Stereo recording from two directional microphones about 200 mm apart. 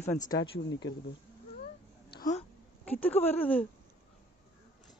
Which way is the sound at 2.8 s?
10° left (ahead or behind).